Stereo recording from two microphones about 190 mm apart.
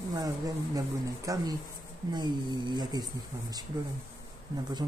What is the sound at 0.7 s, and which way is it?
A man's voice, 20° right (ahead or behind).